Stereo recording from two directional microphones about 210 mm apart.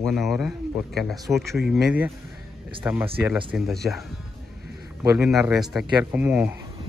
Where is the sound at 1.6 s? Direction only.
Centre (ahead or behind).